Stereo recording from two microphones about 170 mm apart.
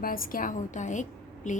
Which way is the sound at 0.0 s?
55° left (ahead or behind).